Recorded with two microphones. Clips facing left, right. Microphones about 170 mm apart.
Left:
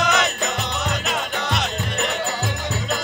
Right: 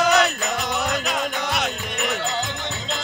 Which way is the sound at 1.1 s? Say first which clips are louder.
Even; centre (ahead or behind).